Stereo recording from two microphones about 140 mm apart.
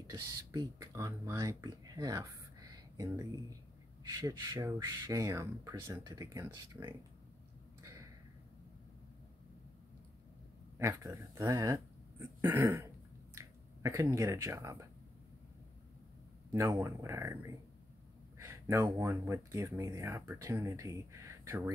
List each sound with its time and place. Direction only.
0.0 s speech: 25° right (ahead or behind)
7.8 s a sound: 25° right (ahead or behind)
10.8 s speech: 20° right (ahead or behind)
12.4 s throat clearing: 15° right (ahead or behind)
16.5 s speech: 20° right (ahead or behind)